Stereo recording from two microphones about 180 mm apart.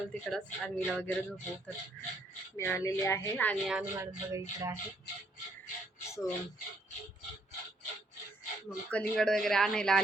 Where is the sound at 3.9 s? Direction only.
15° right (ahead or behind).